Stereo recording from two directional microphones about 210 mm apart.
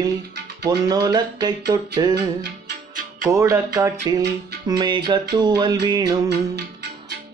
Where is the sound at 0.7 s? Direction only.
20° right (ahead or behind).